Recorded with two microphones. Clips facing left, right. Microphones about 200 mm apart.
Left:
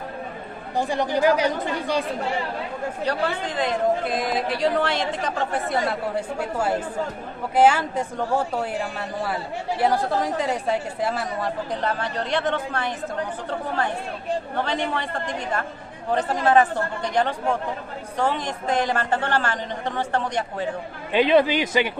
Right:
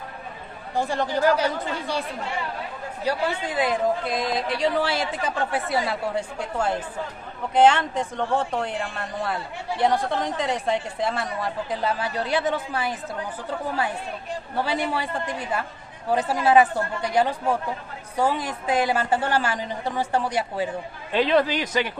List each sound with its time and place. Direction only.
0.7 s speech: 15° left (ahead or behind)
3.0 s a woman's voice: 10° right (ahead or behind)
4.1 s a woman's voice: centre (ahead or behind)
21.1 s a woman's voice: centre (ahead or behind)
21.5 s speech: 25° left (ahead or behind)